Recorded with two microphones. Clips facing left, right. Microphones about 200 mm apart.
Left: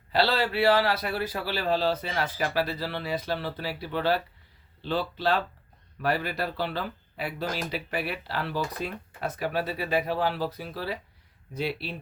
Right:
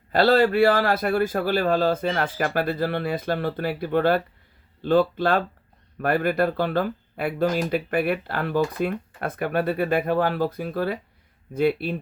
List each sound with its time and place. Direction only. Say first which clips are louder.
0.1 s speech: right 8 dB; 50° right (ahead or behind)